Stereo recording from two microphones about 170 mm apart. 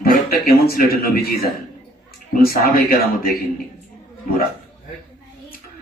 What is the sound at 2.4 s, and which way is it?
Speech, 60° left (ahead or behind).